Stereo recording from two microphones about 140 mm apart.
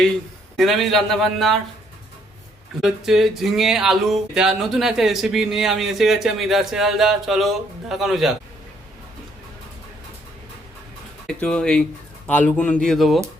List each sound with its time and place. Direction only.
0.5 s speech: centre (ahead or behind)
2.8 s speech: centre (ahead or behind)
11.3 s speech: 5° left (ahead or behind)